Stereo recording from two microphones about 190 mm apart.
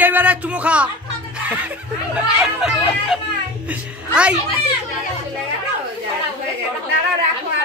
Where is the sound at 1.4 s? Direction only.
10° right (ahead or behind).